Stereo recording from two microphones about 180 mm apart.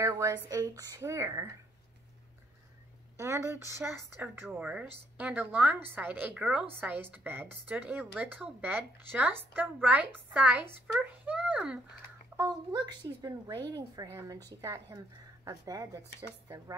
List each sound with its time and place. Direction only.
0.0 s a woman's voice: 20° right (ahead or behind)
3.2 s a woman's voice: 15° right (ahead or behind)
12.4 s a woman's voice: 20° right (ahead or behind)